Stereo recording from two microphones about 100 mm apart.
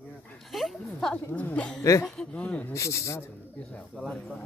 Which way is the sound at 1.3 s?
15° left (ahead or behind).